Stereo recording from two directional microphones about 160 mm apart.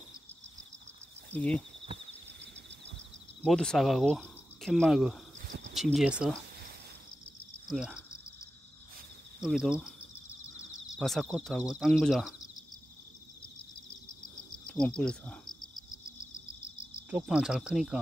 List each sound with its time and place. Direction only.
1.3 s speech: 10° left (ahead or behind)
3.4 s speech: 5° left (ahead or behind)
7.6 s speech: 5° right (ahead or behind)
9.4 s speech: 5° right (ahead or behind)
10.1 s a sound: 20° left (ahead or behind)
11.0 s speech: centre (ahead or behind)
14.3 s cricket: 5° left (ahead or behind)
17.1 s speech: 5° right (ahead or behind)